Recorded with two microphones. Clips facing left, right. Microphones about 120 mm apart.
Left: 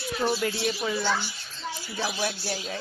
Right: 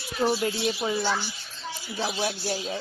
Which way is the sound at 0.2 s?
20° right (ahead or behind).